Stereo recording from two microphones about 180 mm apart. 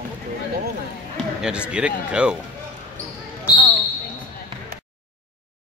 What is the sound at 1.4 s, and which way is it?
Speech, 5° right (ahead or behind).